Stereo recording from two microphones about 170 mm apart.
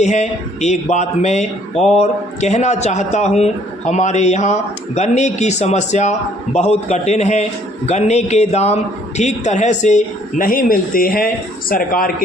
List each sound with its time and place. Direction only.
0.0 s a man's voice: 45° left (ahead or behind); by 12.1 s 60° left (ahead or behind)